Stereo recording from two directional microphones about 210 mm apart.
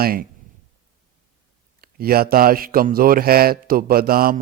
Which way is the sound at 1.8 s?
45° right (ahead or behind).